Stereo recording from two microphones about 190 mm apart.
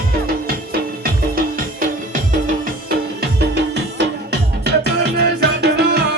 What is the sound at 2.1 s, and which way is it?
Music, 45° right (ahead or behind).